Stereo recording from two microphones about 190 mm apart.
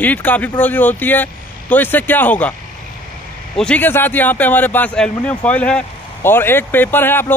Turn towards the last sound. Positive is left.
turn(degrees=10)  # may be behind; listen again after turning